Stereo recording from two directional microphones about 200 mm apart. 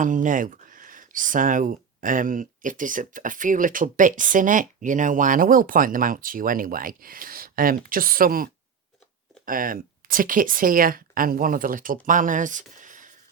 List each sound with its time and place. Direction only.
0.0 s speech: 40° right (ahead or behind)
9.5 s speech: 45° right (ahead or behind)